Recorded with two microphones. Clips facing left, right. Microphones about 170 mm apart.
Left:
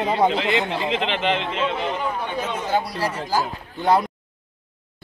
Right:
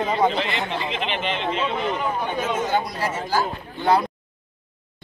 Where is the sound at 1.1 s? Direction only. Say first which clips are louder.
Left 4 dB; 90° left.